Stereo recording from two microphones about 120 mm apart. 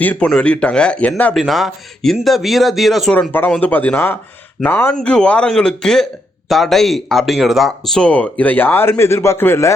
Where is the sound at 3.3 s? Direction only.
15° left (ahead or behind).